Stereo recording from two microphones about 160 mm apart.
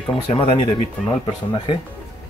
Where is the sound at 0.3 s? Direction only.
35° left (ahead or behind).